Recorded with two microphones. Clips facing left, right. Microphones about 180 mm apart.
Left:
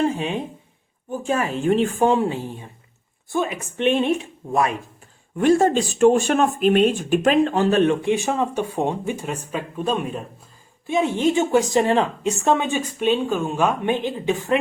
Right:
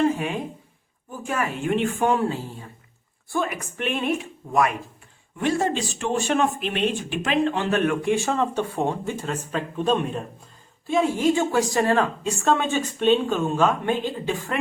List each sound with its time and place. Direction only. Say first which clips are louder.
0.2 s a woman's voice: left 2 dB; 25° left (ahead or behind)
5.4 s speech: left 7 dB; 45° left (ahead or behind)
7.8 s speech: left 3 dB; 25° left (ahead or behind); by 10.2 s 5° left (ahead or behind)
10.8 s a woman's voice: left 1 dB; 20° left (ahead or behind)